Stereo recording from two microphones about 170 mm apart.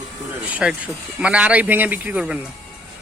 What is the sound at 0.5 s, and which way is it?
A man's voice, 5° right (ahead or behind).